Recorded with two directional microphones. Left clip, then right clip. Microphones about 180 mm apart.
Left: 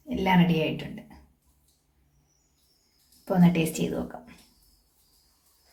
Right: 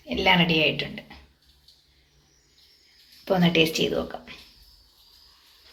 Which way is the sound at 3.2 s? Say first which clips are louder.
Right 5 dB; 5° left (ahead or behind).